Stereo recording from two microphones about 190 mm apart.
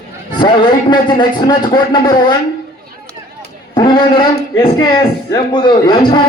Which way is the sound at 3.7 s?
25° left (ahead or behind).